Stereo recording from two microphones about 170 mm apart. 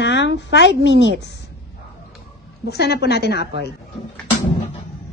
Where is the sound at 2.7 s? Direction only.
75° left (ahead or behind).